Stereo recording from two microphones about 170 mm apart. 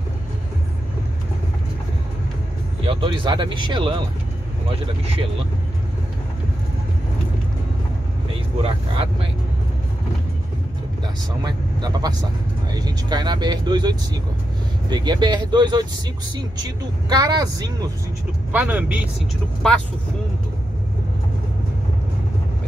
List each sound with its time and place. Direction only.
2.9 s speech: 30° right (ahead or behind)
8.6 s speech: 35° right (ahead or behind)
11.4 s speech: 25° right (ahead or behind)
17.1 s speech: 20° right (ahead or behind)
18.5 s speech: 10° right (ahead or behind)